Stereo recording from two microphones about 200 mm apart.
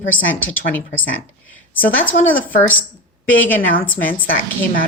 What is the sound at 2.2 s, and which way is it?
Speech, 40° left (ahead or behind).